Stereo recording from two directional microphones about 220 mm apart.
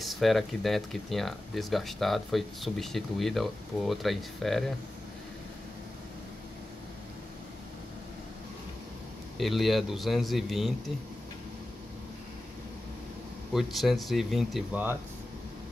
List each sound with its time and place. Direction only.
0.0 s speech: centre (ahead or behind)
9.4 s speech: centre (ahead or behind)
13.5 s speech: centre (ahead or behind)